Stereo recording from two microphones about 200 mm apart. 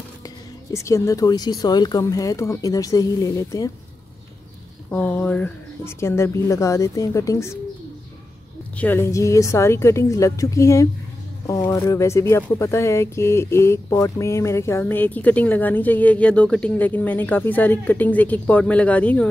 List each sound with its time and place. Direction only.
0.7 s speech: 15° left (ahead or behind)
4.9 s speech: 10° left (ahead or behind)
8.7 s speech: 10° left (ahead or behind)